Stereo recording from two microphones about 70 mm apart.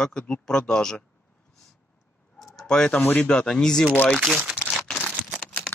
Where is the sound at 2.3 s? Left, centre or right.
Centre.